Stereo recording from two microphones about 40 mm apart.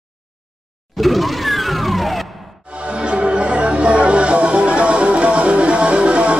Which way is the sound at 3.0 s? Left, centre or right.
Right.